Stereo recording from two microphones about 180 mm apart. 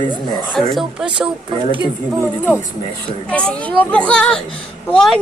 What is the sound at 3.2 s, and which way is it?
Speech, 5° left (ahead or behind).